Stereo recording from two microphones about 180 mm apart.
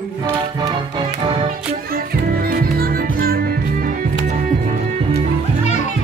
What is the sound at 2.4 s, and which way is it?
Music, 55° right (ahead or behind).